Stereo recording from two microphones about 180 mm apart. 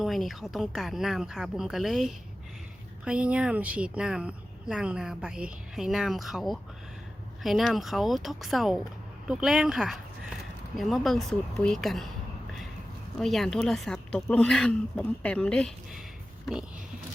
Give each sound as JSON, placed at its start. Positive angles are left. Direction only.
{"t": 0.0, "sound": "speech", "side_deg": 0}
{"t": 13.1, "sound": "speech", "side_deg": 0}